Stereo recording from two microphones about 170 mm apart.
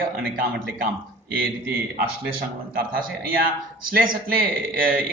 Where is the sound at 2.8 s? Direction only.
60° right (ahead or behind).